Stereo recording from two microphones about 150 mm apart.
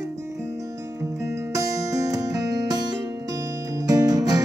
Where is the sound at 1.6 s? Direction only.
20° right (ahead or behind).